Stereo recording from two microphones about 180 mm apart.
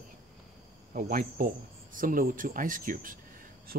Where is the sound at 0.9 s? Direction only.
50° right (ahead or behind).